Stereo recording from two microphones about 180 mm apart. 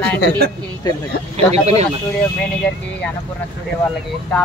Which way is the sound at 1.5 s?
35° right (ahead or behind).